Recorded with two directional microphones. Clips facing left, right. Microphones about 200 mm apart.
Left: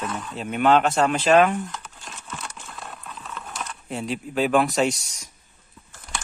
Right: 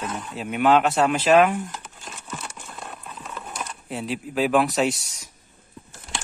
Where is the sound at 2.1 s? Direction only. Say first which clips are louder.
Right 1 dB; 10° right (ahead or behind).